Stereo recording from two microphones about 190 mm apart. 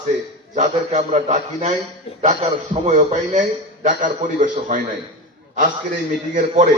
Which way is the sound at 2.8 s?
35° right (ahead or behind).